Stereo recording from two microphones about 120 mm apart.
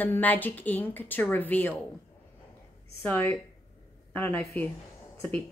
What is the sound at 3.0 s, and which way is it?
Speech, 15° left (ahead or behind).